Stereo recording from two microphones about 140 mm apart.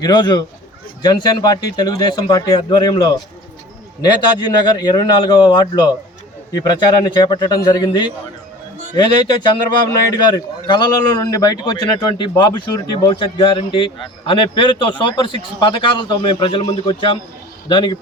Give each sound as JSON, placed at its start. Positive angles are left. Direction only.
{"t": 0.0, "sound": "a man's voice", "side_deg": 30}
{"t": 10.1, "sound": "a man's voice", "side_deg": 30}